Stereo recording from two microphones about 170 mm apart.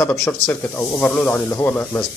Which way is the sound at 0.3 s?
10° left (ahead or behind).